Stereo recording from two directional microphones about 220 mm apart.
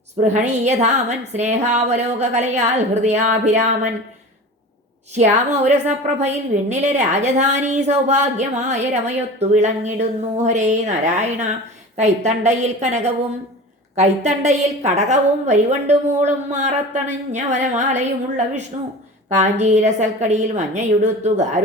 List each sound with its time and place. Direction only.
0.3 s a woman's voice: 30° right (ahead or behind)
5.1 s a woman's voice: 30° right (ahead or behind)